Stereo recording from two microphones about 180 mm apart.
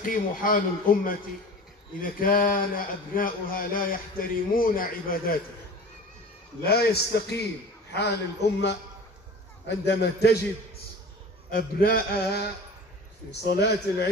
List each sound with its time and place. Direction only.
0.0 s a man's voice: 50° left (ahead or behind)
6.6 s a man's voice: 60° left (ahead or behind)
11.8 s a man's voice: 55° left (ahead or behind)